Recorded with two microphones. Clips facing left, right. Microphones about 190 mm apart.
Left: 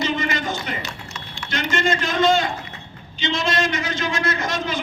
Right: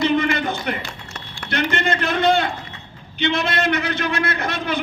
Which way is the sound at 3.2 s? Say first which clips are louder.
Right 1 dB; 60° right (ahead or behind).